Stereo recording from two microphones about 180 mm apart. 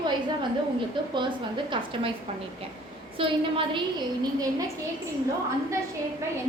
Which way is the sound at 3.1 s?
30° right (ahead or behind).